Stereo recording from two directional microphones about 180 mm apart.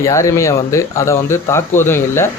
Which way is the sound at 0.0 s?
15° left (ahead or behind).